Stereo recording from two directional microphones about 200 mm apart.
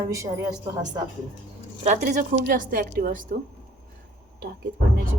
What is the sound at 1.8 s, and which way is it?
A woman's voice, 40° right (ahead or behind).